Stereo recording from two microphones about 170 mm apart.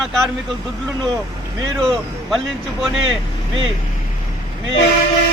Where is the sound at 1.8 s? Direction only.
Centre (ahead or behind).